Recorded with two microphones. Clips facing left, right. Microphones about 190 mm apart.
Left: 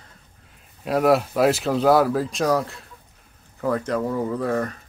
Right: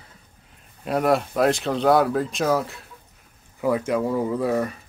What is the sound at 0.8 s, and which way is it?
Speech, centre (ahead or behind).